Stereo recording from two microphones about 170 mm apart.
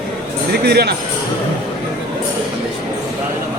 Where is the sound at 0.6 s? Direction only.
70° right (ahead or behind).